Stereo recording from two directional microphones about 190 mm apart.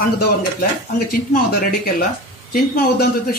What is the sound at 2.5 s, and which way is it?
Speech, 50° left (ahead or behind).